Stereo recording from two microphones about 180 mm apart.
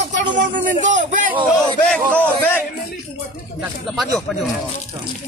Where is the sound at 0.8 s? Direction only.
45° right (ahead or behind).